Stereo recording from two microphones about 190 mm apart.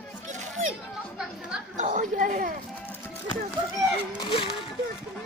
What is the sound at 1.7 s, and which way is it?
Speech, 40° right (ahead or behind).